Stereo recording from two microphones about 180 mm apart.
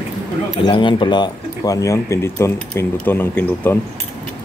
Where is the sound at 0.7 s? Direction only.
30° left (ahead or behind); by 3.7 s 10° left (ahead or behind).